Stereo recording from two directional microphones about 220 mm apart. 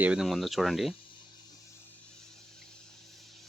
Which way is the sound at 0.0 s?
5° right (ahead or behind).